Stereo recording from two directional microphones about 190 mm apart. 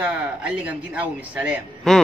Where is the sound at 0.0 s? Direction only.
5° right (ahead or behind).